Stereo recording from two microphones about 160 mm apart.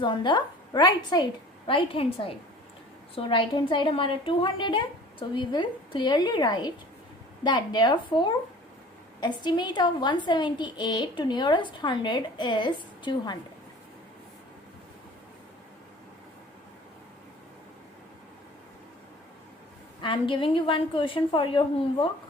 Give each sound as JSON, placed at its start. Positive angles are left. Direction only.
{"t": 0.0, "sound": "a woman's voice", "side_deg": 30}
{"t": 20.0, "sound": "a woman's voice", "side_deg": 30}